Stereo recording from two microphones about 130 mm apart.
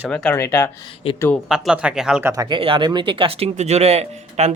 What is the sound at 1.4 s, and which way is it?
Speech, 5° right (ahead or behind).